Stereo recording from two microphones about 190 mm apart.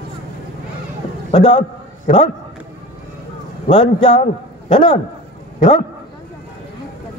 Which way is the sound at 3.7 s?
25° left (ahead or behind).